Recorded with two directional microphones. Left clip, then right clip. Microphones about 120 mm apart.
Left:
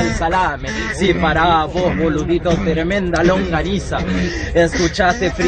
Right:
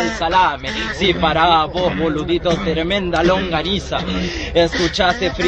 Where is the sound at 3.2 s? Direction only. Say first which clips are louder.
Left 1 dB; 5° left (ahead or behind).